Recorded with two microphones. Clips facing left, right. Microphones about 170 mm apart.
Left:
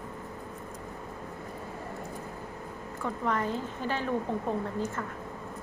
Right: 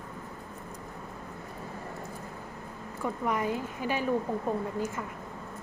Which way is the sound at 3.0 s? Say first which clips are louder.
Right 1 dB; 10° right (ahead or behind).